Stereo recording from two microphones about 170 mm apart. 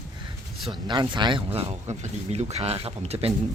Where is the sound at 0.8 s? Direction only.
25° right (ahead or behind).